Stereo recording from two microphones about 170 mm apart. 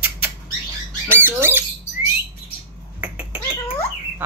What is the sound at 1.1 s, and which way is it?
Speech, 15° right (ahead or behind).